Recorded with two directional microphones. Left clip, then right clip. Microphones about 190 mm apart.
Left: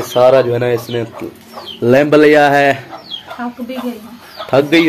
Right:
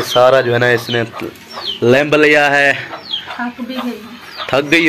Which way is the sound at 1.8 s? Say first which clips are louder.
Left 2 dB; 15° left (ahead or behind).